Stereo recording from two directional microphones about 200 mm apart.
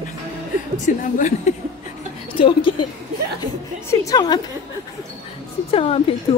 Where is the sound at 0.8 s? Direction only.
40° left (ahead or behind).